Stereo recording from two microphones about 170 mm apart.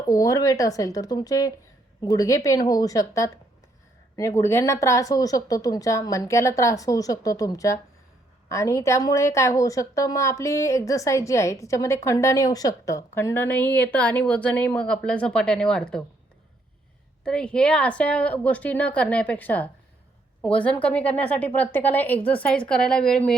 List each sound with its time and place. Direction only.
0.1 s a woman's voice: 20° left (ahead or behind); by 16.0 s 5° left (ahead or behind)
17.2 s a woman's voice: 5° left (ahead or behind)